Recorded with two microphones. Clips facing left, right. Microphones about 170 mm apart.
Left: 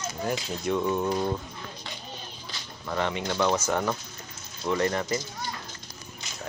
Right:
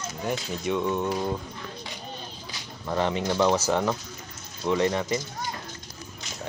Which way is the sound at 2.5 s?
20° right (ahead or behind).